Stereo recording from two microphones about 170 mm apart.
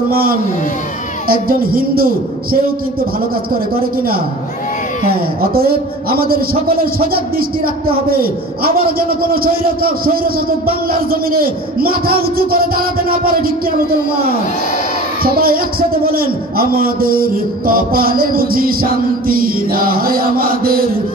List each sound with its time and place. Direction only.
0.1 s a man's voice: 60° right (ahead or behind)
5.4 s a man's voice: 60° right (ahead or behind)
15.2 s a man's voice: 60° right (ahead or behind)